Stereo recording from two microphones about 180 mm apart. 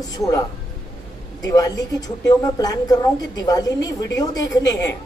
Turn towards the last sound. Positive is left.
turn(degrees=20)  # may be behind; listen again after turning